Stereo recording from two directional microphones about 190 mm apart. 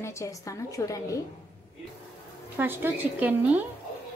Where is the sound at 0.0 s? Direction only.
15° left (ahead or behind).